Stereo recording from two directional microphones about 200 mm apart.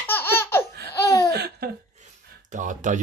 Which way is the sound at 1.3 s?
50° right (ahead or behind).